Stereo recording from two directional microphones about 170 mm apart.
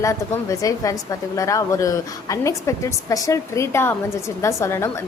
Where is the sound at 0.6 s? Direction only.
20° left (ahead or behind).